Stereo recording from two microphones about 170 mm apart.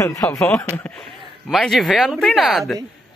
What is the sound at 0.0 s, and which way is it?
Speech, 20° left (ahead or behind).